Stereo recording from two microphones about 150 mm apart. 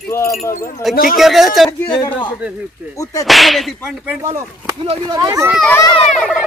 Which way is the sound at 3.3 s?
Centre (ahead or behind).